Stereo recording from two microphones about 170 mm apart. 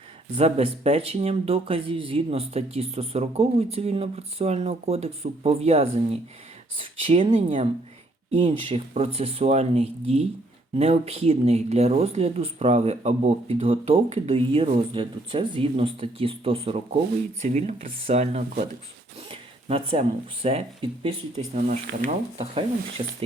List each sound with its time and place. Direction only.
0.3 s speech: 35° right (ahead or behind)